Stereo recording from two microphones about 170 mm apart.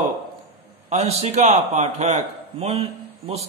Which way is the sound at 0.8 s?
40° right (ahead or behind).